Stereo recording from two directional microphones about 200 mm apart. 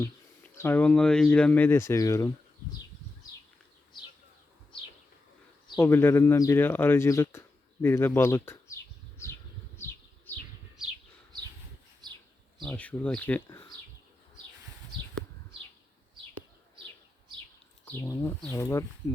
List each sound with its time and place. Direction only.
0.0 s speech: 10° left (ahead or behind)
5.8 s speech: 10° left (ahead or behind)
9.7 s bee: 10° left (ahead or behind)
12.6 s speech: 5° left (ahead or behind)
17.8 s speech: 15° left (ahead or behind)